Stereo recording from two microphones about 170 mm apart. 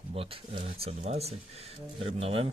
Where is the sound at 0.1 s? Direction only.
35° right (ahead or behind).